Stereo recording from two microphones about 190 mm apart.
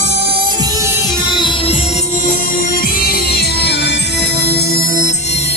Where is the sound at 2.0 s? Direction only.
45° left (ahead or behind).